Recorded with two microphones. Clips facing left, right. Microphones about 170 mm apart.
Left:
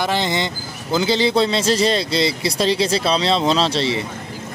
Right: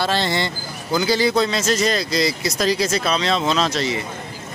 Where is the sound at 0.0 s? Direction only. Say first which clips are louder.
Left 1 dB; 15° left (ahead or behind).